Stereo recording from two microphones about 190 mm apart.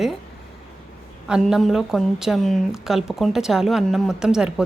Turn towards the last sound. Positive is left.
turn(degrees=-5)  # may be behind; listen again after turning